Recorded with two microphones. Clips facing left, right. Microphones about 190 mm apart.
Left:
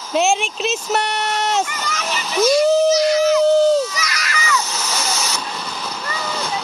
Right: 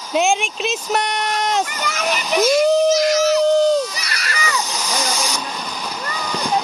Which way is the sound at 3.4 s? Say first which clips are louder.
Left 1 dB; 5° left (ahead or behind).